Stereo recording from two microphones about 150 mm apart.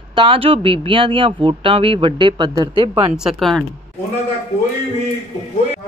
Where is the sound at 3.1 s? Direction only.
5° right (ahead or behind).